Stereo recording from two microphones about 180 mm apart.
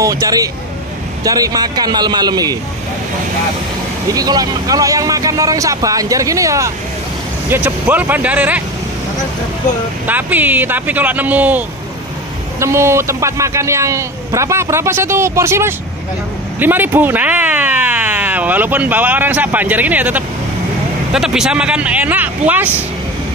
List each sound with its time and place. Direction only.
0.0 s speech: 20° right (ahead or behind)
4.1 s a man's voice: 20° right (ahead or behind)
10.0 s a man's voice: 10° right (ahead or behind)